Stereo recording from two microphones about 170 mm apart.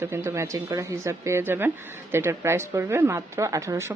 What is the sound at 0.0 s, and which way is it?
Speech, 15° right (ahead or behind).